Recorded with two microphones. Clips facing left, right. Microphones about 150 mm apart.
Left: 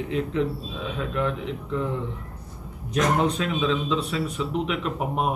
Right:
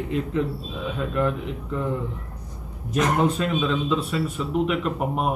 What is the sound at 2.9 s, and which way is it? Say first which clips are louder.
A man's voice: right 1 dB; 5° right (ahead or behind).